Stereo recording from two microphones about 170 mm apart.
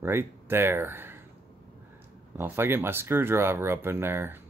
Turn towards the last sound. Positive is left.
turn(degrees=-15)  # may be behind; listen again after turning